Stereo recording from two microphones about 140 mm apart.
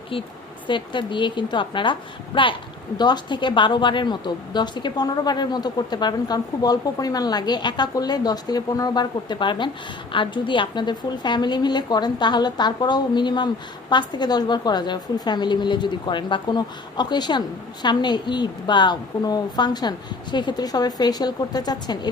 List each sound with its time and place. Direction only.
0.7 s a woman's voice: 35° left (ahead or behind)